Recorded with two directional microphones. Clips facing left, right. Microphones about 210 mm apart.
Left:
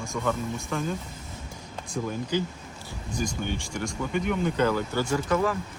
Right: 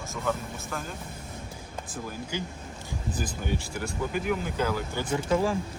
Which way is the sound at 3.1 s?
5° right (ahead or behind).